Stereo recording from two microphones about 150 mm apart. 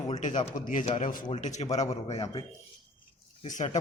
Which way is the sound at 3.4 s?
55° left (ahead or behind).